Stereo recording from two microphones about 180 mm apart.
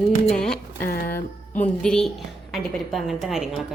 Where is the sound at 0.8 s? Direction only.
55° left (ahead or behind).